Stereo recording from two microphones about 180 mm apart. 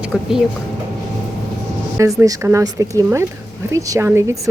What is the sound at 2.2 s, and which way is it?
A woman's voice, 20° right (ahead or behind).